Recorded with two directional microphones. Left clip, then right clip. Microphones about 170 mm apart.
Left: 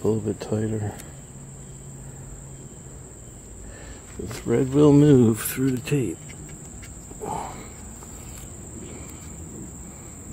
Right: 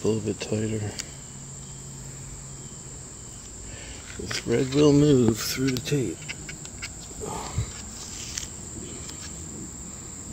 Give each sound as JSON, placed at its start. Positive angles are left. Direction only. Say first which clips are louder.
{"t": 0.0, "sound": "speech", "louder": "left 2 dB", "side_deg": 0}
{"t": 4.3, "sound": "speech", "louder": "left 2 dB", "side_deg": 5}
{"t": 4.7, "sound": "speech", "louder": "left 3 dB", "side_deg": 20}
{"t": 7.2, "sound": "cricket", "louder": "left 4 dB", "side_deg": 5}